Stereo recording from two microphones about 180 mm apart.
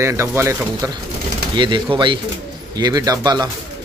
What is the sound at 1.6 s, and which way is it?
A man's voice, 25° right (ahead or behind).